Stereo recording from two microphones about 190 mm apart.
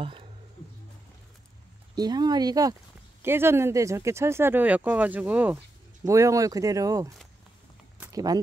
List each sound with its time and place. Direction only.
0.0 s music: 30° right (ahead or behind)
2.0 s speech: 20° right (ahead or behind)
8.0 s a sound: 20° right (ahead or behind)